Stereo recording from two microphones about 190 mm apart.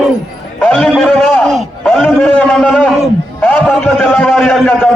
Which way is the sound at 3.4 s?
10° left (ahead or behind).